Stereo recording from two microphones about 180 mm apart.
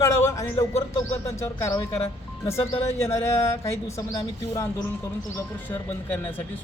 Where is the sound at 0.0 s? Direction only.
15° left (ahead or behind).